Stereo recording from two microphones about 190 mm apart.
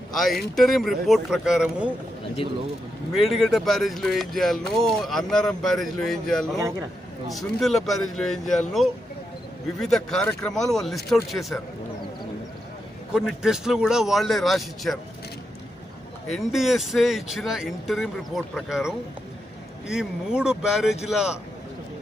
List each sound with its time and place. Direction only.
0.1 s speech: centre (ahead or behind)
3.1 s speech: centre (ahead or behind)
6.6 s a man's voice: 15° right (ahead or behind)
7.3 s speech: centre (ahead or behind)
13.1 s speech: 5° right (ahead or behind)
16.3 s speech: centre (ahead or behind)